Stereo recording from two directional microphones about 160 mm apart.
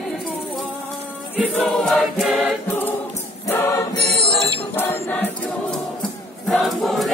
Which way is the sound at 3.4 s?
15° left (ahead or behind).